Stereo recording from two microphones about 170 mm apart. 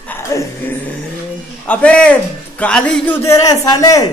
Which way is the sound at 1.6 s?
5° left (ahead or behind).